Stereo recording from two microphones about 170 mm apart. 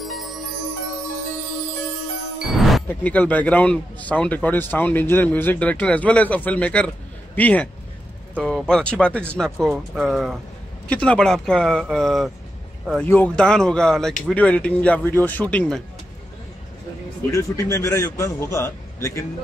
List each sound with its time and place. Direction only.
0.0 s music: centre (ahead or behind)
2.4 s music: centre (ahead or behind)
2.9 s a man's voice: 10° left (ahead or behind)
17.3 s a man's voice: 20° left (ahead or behind)